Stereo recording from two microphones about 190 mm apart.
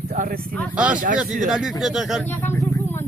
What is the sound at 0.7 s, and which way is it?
Speech, 5° right (ahead or behind).